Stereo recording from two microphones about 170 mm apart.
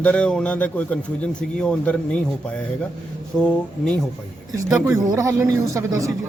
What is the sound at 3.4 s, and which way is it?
Speech, 5° left (ahead or behind).